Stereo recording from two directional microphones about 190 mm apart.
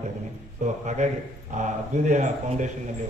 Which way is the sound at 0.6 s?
35° right (ahead or behind).